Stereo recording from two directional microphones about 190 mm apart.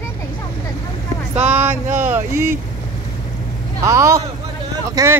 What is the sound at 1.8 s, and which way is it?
Speech, 40° right (ahead or behind).